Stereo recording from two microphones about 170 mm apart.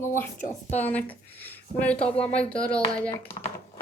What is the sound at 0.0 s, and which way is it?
Speech, 15° left (ahead or behind).